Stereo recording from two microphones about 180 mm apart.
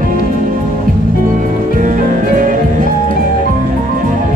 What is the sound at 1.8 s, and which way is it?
Music, 45° right (ahead or behind).